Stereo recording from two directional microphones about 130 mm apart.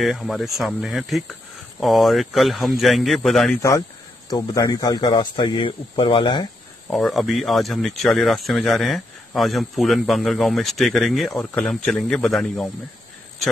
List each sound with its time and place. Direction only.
0.0 s speech: centre (ahead or behind)
4.3 s a man's voice: 25° left (ahead or behind)
6.9 s speech: centre (ahead or behind)